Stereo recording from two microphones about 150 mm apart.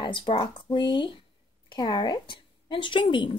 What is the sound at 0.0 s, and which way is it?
A woman's voice, 35° left (ahead or behind).